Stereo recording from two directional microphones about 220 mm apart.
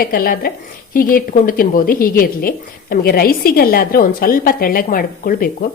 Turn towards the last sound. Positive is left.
turn(degrees=40)  # may be behind; listen again after turning